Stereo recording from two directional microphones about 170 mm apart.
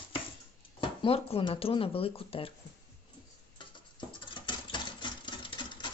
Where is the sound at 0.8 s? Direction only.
35° left (ahead or behind).